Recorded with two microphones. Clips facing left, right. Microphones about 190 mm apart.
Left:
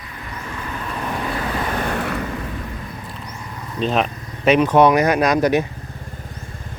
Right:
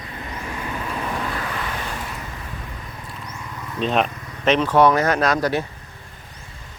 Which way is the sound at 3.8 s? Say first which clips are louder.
Left 1 dB; centre (ahead or behind).